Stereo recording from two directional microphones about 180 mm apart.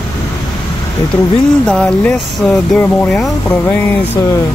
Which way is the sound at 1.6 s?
5° left (ahead or behind).